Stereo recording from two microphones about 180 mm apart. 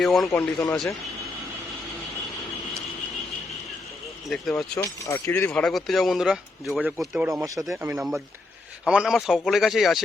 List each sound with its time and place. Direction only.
0.0 s speech: centre (ahead or behind)
4.3 s speech: centre (ahead or behind)
4.8 s speech: 15° left (ahead or behind)
5.3 s speech: 5° left (ahead or behind)
7.3 s speech: 15° right (ahead or behind); by 10.0 s centre (ahead or behind)